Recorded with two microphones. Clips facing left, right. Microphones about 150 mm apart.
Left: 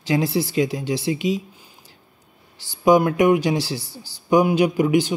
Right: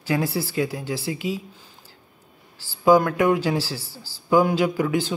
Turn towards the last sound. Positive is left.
turn(degrees=15)  # may be behind; listen again after turning